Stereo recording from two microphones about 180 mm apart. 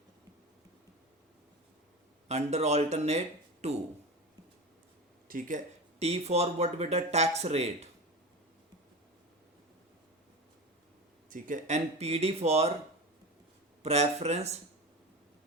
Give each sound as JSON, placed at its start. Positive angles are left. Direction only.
{"t": 2.2, "sound": "speech", "side_deg": -35}
{"t": 5.3, "sound": "speech", "side_deg": -45}
{"t": 11.3, "sound": "speech", "side_deg": -50}
{"t": 13.8, "sound": "speech", "side_deg": -35}